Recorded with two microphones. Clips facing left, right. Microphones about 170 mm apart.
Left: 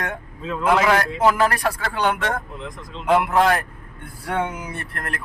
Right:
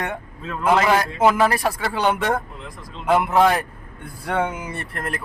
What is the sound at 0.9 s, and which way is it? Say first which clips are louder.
Speech: right 1 dB; 10° right (ahead or behind).